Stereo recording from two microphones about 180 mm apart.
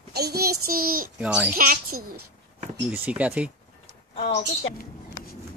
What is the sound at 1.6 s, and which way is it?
Speech, 50° right (ahead or behind).